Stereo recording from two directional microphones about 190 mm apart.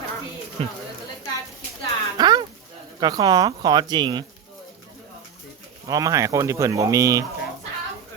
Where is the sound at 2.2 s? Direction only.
20° right (ahead or behind).